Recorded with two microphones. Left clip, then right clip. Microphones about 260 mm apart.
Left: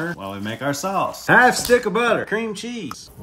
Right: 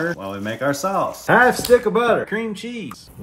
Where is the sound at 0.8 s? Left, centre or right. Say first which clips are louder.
Right 1 dB; left.